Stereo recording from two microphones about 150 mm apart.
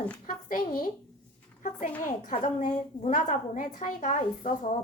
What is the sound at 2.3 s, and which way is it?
A woman's voice, 50° left (ahead or behind).